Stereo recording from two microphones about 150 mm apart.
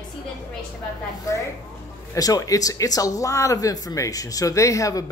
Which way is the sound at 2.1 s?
25° left (ahead or behind).